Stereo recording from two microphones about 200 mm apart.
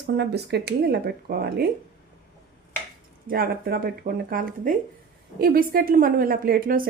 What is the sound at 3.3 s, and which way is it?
A woman's voice, 50° right (ahead or behind).